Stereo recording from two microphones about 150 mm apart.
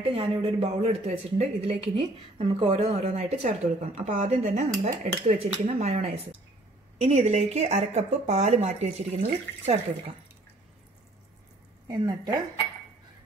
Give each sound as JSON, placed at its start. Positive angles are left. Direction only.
{"t": 0.0, "sound": "speech", "side_deg": -40}
{"t": 11.9, "sound": "speech", "side_deg": -25}